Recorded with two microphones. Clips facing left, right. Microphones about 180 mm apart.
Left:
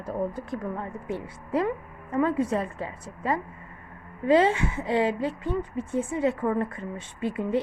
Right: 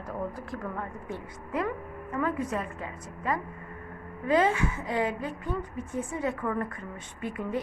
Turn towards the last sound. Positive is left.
turn(degrees=25)  # may be behind; listen again after turning